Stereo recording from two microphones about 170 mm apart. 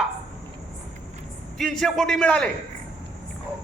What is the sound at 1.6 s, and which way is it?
Speech, centre (ahead or behind).